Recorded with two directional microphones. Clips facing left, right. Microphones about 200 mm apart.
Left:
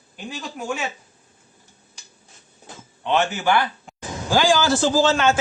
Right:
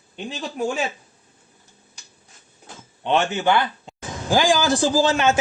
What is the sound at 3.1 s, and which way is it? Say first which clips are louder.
A man's voice: right 1 dB; 20° right (ahead or behind).